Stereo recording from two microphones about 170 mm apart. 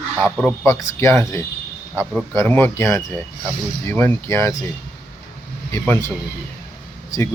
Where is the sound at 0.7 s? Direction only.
15° left (ahead or behind).